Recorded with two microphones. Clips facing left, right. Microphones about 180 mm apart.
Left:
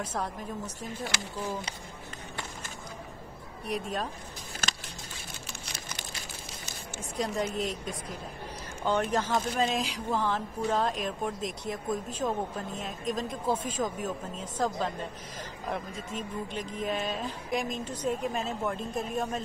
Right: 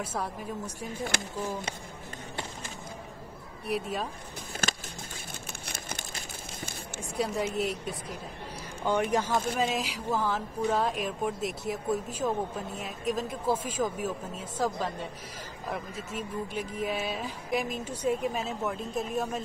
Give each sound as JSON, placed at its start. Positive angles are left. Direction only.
{"t": 0.0, "sound": "speech", "side_deg": -10}
{"t": 3.6, "sound": "speech", "side_deg": -5}
{"t": 5.7, "sound": "a sound", "side_deg": -50}
{"t": 7.2, "sound": "a man's voice", "side_deg": -5}